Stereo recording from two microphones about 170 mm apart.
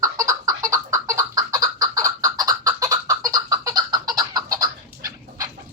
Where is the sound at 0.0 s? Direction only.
20° right (ahead or behind).